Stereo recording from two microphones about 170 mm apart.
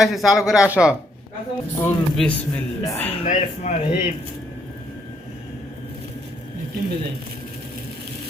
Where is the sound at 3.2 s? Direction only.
45° left (ahead or behind).